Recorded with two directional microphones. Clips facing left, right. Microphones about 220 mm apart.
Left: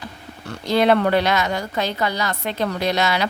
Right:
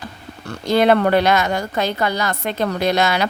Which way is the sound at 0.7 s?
50° right (ahead or behind).